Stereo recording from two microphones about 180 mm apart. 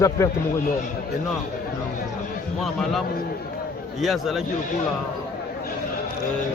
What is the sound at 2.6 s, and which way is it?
A man's voice, centre (ahead or behind).